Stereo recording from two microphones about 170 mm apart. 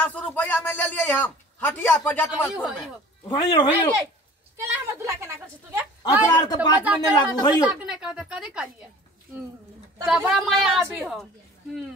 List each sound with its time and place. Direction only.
0.0 s a man's voice: 10° left (ahead or behind)
2.4 s a woman's voice: 5° right (ahead or behind)
3.3 s speech: 25° left (ahead or behind)
4.6 s a sound: 15° right (ahead or behind)
6.3 s speech: 25° left (ahead or behind)
7.6 s a woman's voice: 5° right (ahead or behind)
10.0 s a woman's voice: 5° right (ahead or behind)